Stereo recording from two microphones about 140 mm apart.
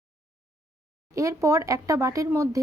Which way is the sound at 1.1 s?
20° right (ahead or behind).